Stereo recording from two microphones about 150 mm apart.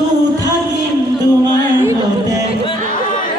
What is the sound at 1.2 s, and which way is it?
Music, 25° right (ahead or behind).